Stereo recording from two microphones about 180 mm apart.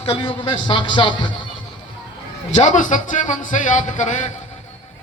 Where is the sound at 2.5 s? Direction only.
40° left (ahead or behind).